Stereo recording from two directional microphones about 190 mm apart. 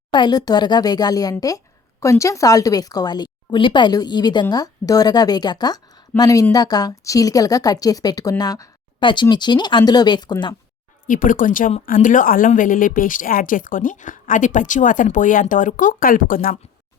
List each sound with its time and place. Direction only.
0.1 s speech: 25° left (ahead or behind)
11.0 s a woman's voice: 45° left (ahead or behind)